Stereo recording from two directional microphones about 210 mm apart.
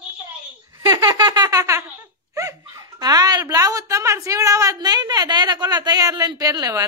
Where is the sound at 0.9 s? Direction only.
20° right (ahead or behind).